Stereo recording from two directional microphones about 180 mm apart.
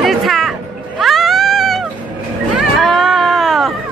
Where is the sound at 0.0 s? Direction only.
Centre (ahead or behind).